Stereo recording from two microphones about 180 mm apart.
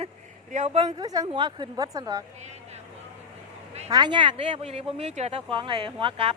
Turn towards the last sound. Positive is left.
turn(degrees=-30)  # may be behind; listen again after turning